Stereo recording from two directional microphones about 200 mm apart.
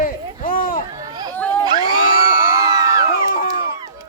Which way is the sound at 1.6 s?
20° right (ahead or behind).